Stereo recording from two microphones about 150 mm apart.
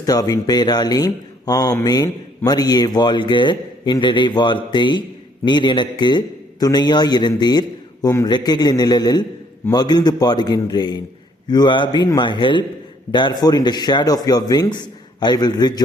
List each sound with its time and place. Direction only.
0.0 s a man's voice: 25° left (ahead or behind)